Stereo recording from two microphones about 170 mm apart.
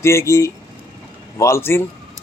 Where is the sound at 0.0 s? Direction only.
15° left (ahead or behind).